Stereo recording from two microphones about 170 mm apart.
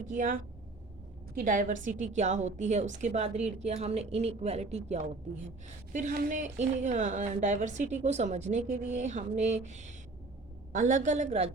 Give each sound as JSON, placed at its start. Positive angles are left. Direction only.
{"t": 0.0, "sound": "a woman's voice", "side_deg": -50}
{"t": 1.4, "sound": "a woman's voice", "side_deg": -50}